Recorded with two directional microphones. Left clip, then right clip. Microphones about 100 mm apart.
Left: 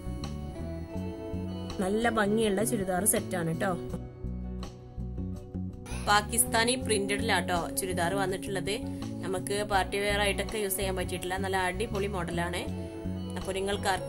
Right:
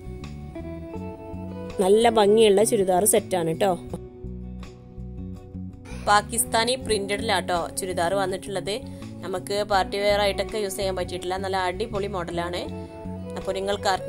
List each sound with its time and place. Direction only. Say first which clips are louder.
1.8 s a woman's voice: right 10 dB; 60° right (ahead or behind)
6.0 s a woman's voice: right 6 dB; 30° right (ahead or behind)